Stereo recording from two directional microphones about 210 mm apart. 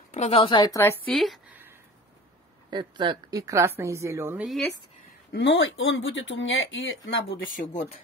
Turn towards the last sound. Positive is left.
turn(degrees=35)  # may be behind; listen again after turning